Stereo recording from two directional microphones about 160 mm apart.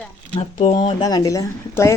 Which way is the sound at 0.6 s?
25° left (ahead or behind).